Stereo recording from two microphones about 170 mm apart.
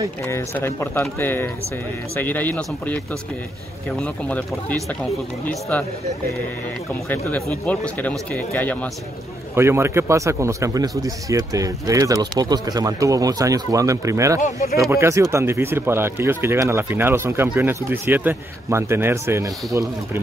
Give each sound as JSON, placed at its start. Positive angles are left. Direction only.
{"t": 0.3, "sound": "speech", "side_deg": 15}
{"t": 4.0, "sound": "speech", "side_deg": 5}
{"t": 6.9, "sound": "speech", "side_deg": 10}
{"t": 9.6, "sound": "speech", "side_deg": -15}
{"t": 14.4, "sound": "speech", "side_deg": 60}
{"t": 14.8, "sound": "speech", "side_deg": -15}